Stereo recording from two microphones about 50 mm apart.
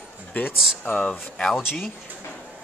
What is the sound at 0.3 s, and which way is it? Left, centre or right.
Speech, left.